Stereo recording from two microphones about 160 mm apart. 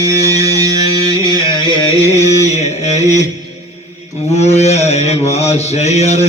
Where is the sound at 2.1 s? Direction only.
45° left (ahead or behind).